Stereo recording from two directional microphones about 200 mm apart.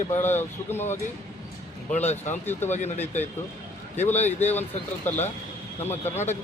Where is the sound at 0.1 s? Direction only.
10° left (ahead or behind).